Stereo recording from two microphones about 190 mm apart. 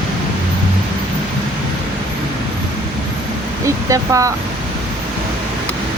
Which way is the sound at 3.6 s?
15° right (ahead or behind).